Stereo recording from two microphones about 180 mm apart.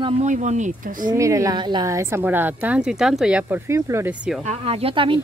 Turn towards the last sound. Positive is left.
turn(degrees=-30)  # may be behind; listen again after turning